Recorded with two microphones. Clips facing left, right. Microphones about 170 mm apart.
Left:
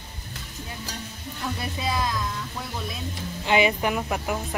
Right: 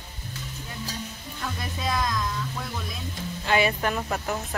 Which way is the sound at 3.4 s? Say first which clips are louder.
Left 2 dB; 15° left (ahead or behind).